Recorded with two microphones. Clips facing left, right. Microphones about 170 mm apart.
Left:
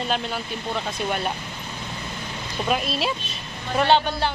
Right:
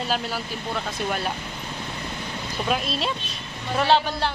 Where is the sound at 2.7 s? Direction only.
Centre (ahead or behind).